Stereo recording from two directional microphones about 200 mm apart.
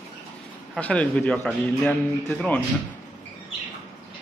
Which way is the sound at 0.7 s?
5° left (ahead or behind).